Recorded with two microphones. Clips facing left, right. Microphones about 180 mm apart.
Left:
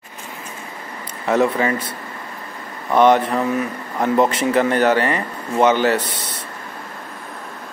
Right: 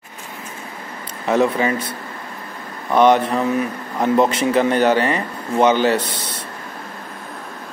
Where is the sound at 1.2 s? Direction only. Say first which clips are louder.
Even; 20° right (ahead or behind).